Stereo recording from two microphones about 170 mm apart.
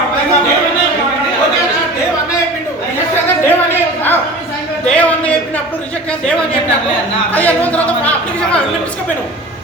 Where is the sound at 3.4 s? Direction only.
10° left (ahead or behind).